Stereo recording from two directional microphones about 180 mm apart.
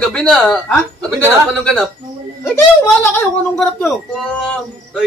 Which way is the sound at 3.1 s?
10° left (ahead or behind).